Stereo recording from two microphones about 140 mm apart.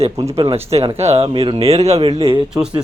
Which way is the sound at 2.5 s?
25° right (ahead or behind).